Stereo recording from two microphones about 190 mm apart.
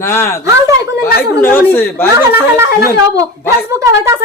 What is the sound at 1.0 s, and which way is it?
Speech, 55° left (ahead or behind).